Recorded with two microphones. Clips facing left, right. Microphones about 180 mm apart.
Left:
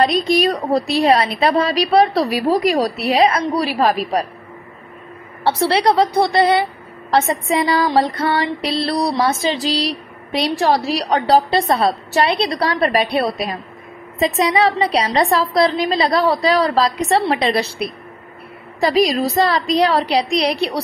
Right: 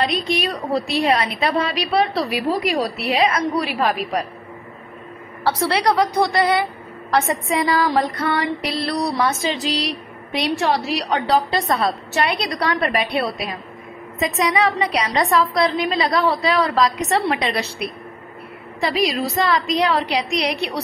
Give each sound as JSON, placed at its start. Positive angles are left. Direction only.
{"t": 0.0, "sound": "a woman's voice", "side_deg": 40}
{"t": 5.4, "sound": "music", "side_deg": 25}
{"t": 10.3, "sound": "a woman's voice", "side_deg": 35}